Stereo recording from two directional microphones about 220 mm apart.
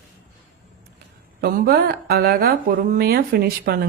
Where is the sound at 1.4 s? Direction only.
45° right (ahead or behind).